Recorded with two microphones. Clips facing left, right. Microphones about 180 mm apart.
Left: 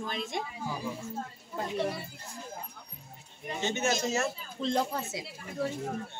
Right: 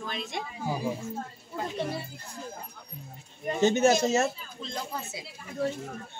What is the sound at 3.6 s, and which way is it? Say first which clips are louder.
Speech: right 8 dB; 40° right (ahead or behind).